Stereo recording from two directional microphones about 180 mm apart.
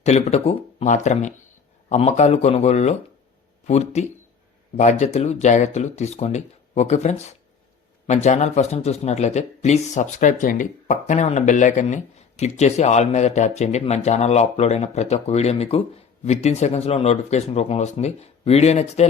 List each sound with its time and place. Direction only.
0.0 s speech: 40° left (ahead or behind)